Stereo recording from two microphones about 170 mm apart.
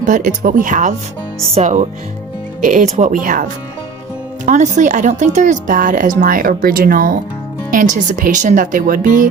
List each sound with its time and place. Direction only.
0.0 s speech: 50° right (ahead or behind)
4.4 s speech: 45° right (ahead or behind)